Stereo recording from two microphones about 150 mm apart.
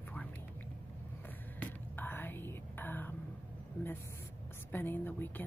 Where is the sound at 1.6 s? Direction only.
15° left (ahead or behind).